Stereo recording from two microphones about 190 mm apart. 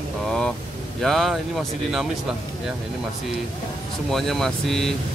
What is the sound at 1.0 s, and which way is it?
Speech, centre (ahead or behind).